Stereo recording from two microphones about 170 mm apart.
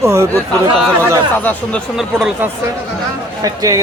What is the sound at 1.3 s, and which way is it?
Speech, 10° left (ahead or behind).